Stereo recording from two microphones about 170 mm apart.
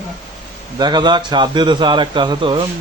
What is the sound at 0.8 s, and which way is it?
A man's voice, 25° right (ahead or behind).